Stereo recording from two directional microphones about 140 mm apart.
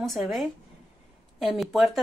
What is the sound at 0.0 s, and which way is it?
Speech, centre (ahead or behind).